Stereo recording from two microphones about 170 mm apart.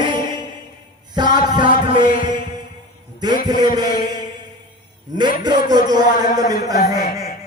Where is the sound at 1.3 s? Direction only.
25° right (ahead or behind).